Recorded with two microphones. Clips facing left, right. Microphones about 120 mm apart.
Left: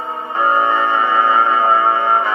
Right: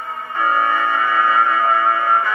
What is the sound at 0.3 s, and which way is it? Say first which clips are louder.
Music: left 3 dB; 20° left (ahead or behind).